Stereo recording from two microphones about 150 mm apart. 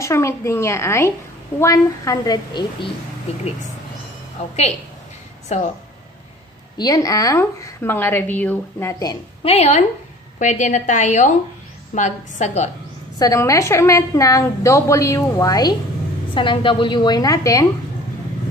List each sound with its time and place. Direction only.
0.0 s a woman's voice: 20° left (ahead or behind)
5.5 s a woman's voice: 50° left (ahead or behind)
6.8 s a woman's voice: 25° left (ahead or behind)
9.1 s a woman's voice: 40° left (ahead or behind)
13.2 s a woman's voice: 20° left (ahead or behind)